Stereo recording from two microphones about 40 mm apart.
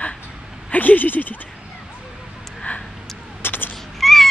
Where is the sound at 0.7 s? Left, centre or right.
Left.